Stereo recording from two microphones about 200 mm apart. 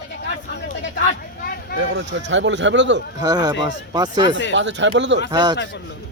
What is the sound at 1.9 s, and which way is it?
Speech, 65° right (ahead or behind).